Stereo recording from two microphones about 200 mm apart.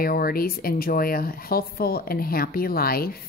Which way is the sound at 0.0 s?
50° left (ahead or behind).